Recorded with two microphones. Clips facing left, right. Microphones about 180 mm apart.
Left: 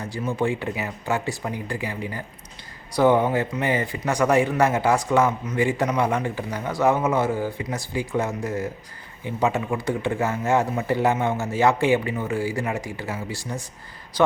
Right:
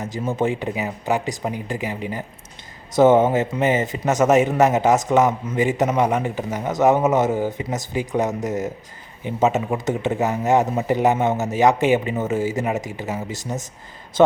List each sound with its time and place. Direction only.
0.0 s a man's voice: 20° right (ahead or behind)